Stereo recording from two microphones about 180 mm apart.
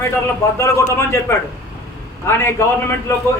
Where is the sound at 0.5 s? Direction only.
15° left (ahead or behind).